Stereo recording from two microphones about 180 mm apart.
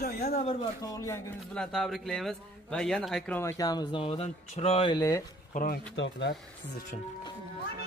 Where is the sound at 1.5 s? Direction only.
Centre (ahead or behind).